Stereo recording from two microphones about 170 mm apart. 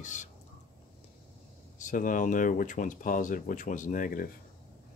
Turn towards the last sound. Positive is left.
turn(degrees=55)  # may be behind; listen again after turning